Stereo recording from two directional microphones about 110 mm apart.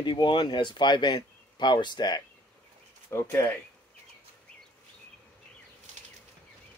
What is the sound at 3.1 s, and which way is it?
Speech, 20° left (ahead or behind).